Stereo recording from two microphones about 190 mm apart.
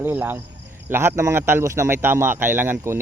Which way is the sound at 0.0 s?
10° right (ahead or behind).